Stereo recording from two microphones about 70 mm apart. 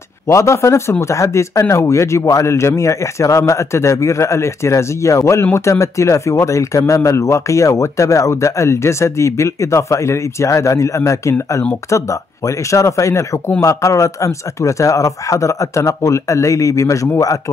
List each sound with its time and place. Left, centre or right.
0.3 s speech: left